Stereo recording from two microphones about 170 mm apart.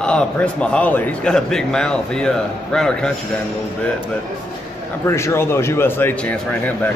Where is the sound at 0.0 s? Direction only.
5° left (ahead or behind).